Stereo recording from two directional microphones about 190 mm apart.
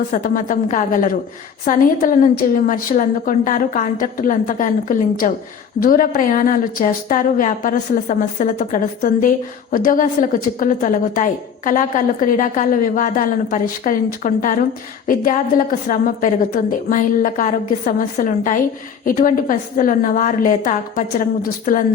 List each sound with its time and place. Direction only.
0.1 s a woman's voice: 45° left (ahead or behind)